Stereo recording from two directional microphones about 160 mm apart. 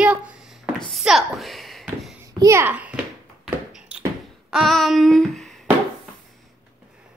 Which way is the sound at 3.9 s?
5° right (ahead or behind).